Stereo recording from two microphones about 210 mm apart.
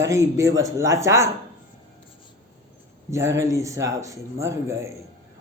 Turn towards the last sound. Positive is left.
turn(degrees=-15)  # may be behind; listen again after turning